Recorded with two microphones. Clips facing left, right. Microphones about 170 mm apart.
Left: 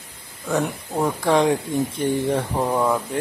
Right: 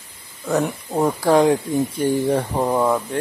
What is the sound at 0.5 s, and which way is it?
Speech, 10° right (ahead or behind).